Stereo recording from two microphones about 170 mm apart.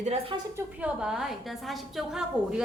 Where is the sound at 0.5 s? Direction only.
5° right (ahead or behind).